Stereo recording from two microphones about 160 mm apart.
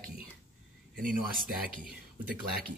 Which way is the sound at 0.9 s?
60° right (ahead or behind).